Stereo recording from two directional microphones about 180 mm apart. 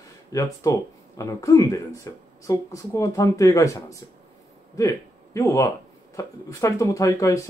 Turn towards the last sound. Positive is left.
turn(degrees=15)  # may be behind; listen again after turning